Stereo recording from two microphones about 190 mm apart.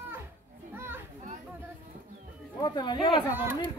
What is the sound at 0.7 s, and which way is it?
Children playing, 10° right (ahead or behind).